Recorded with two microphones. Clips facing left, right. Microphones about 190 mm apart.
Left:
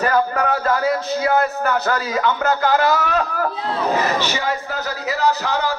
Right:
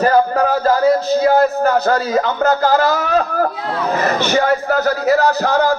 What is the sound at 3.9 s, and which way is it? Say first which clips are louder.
A man's voice: right 8 dB; 50° right (ahead or behind).